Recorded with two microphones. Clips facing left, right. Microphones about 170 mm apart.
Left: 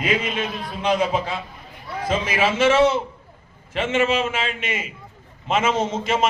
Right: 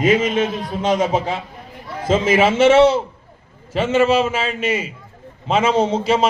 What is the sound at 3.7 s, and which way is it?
A man's voice, 40° right (ahead or behind).